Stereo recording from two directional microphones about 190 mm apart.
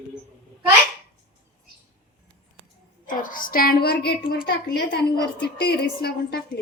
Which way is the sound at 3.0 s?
45° left (ahead or behind).